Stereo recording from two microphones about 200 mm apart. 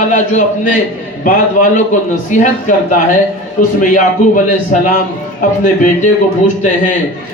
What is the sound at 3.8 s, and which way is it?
A man's voice, 40° left (ahead or behind).